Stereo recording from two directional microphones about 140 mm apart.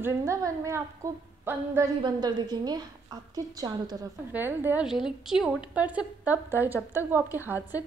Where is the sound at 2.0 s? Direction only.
30° right (ahead or behind).